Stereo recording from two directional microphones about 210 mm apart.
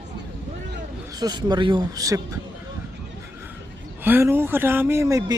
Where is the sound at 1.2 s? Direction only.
20° right (ahead or behind).